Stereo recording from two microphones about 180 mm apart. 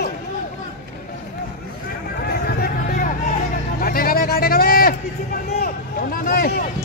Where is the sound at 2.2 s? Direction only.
60° left (ahead or behind).